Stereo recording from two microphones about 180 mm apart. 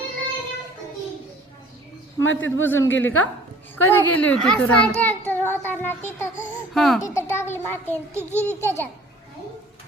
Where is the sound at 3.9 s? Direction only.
10° left (ahead or behind).